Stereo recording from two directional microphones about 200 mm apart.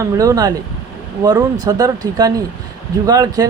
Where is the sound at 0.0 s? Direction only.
15° right (ahead or behind).